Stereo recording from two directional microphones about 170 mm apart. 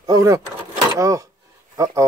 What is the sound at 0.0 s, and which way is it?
Vehicle, 20° right (ahead or behind).